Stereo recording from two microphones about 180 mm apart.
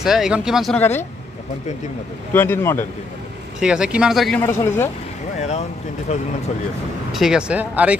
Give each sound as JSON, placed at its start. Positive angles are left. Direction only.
{"t": 0.0, "sound": "speech", "side_deg": 0}
{"t": 0.7, "sound": "speech", "side_deg": 10}
{"t": 2.3, "sound": "speech", "side_deg": 10}
{"t": 3.5, "sound": "speech", "side_deg": -5}
{"t": 4.4, "sound": "speech", "side_deg": 15}
{"t": 5.4, "sound": "speech", "side_deg": 40}
{"t": 7.1, "sound": "speech", "side_deg": 0}